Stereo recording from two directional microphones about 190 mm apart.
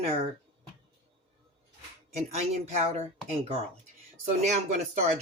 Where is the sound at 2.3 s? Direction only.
35° right (ahead or behind).